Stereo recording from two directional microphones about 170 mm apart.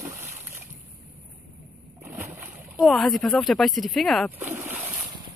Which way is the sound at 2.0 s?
15° right (ahead or behind).